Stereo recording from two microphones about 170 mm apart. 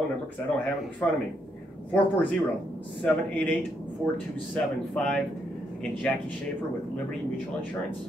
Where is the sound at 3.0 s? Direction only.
10° left (ahead or behind).